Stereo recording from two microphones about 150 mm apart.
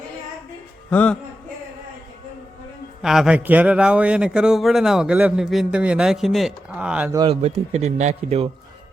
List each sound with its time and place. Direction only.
0.9 s speech: 10° left (ahead or behind)
3.0 s speech: 5° right (ahead or behind)
7.3 s speech: 45° right (ahead or behind)